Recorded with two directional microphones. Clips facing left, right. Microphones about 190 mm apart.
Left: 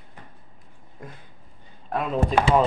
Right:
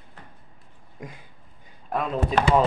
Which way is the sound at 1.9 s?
Centre (ahead or behind).